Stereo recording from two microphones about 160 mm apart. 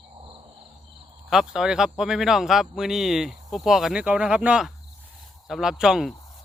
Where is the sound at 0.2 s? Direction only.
30° right (ahead or behind).